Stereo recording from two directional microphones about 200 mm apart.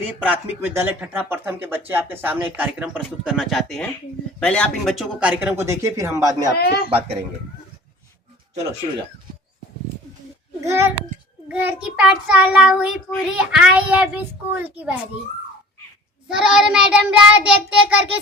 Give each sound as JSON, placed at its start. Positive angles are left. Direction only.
{"t": 0.2, "sound": "speech", "side_deg": -10}
{"t": 6.5, "sound": "a man's voice", "side_deg": 55}
{"t": 10.6, "sound": "speech", "side_deg": -15}
{"t": 11.4, "sound": "child singing", "side_deg": -10}
{"t": 16.3, "sound": "child singing", "side_deg": -5}